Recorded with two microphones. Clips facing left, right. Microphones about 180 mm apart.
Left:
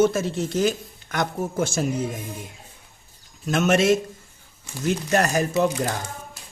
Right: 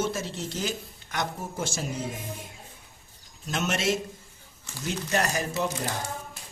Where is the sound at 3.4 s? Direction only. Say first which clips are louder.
Left 9 dB; 55° left (ahead or behind).